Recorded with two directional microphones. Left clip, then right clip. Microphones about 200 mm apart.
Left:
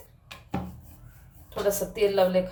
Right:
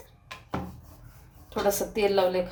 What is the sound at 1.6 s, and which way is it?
Speech, 40° right (ahead or behind).